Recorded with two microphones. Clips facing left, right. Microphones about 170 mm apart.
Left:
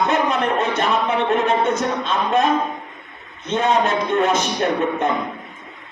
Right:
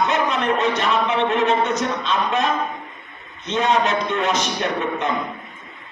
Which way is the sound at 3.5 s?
50° left (ahead or behind).